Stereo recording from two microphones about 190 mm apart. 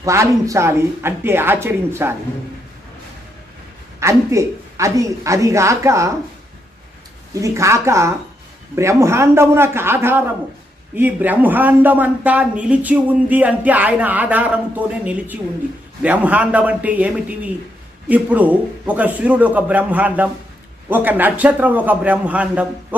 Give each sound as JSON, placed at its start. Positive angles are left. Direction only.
{"t": 0.0, "sound": "a man's voice", "side_deg": -15}
{"t": 4.0, "sound": "a man's voice", "side_deg": -15}
{"t": 7.4, "sound": "a man's voice", "side_deg": -15}